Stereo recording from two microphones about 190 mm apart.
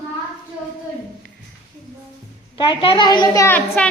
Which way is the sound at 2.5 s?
25° left (ahead or behind).